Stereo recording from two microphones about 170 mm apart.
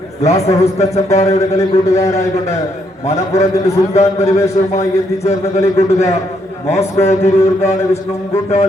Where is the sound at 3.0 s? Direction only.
40° left (ahead or behind).